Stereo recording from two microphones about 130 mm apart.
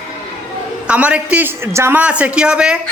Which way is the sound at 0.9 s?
10° right (ahead or behind).